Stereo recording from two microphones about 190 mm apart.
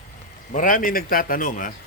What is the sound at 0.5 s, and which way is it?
Speech, 45° left (ahead or behind).